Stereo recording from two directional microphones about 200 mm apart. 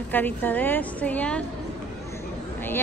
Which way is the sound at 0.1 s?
10° left (ahead or behind).